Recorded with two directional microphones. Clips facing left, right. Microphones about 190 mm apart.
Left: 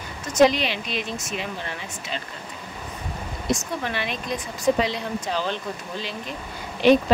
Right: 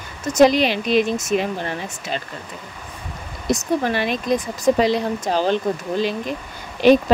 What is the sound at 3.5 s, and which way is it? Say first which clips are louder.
Speech: right 7 dB; 40° right (ahead or behind).